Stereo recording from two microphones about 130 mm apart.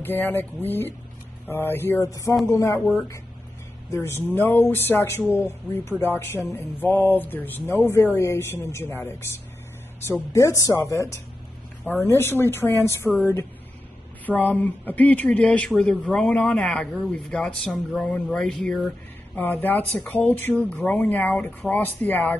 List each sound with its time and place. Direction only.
0.0 s a man's voice: 15° left (ahead or behind)
2.8 s speech: 5° left (ahead or behind)
3.9 s a man's voice: 20° left (ahead or behind)
10.3 s speech: 25° left (ahead or behind)
14.2 s a man's voice: 10° left (ahead or behind)
20.0 s a man's voice: 15° left (ahead or behind)